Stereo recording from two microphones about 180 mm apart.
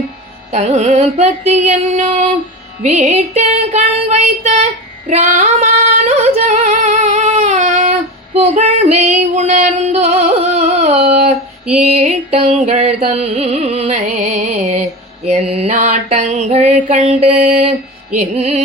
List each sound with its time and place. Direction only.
0.5 s music: 35° right (ahead or behind)
5.0 s female singing: 45° right (ahead or behind)
11.7 s music: 40° right (ahead or behind)